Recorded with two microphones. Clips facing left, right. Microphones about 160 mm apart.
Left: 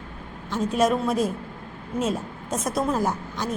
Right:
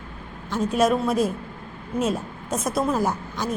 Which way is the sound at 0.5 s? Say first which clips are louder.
Right 1 dB; 10° right (ahead or behind).